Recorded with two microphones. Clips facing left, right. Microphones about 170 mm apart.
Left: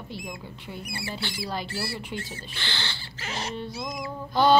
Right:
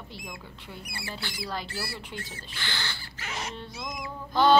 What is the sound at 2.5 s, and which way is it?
Rodents, 30° left (ahead or behind).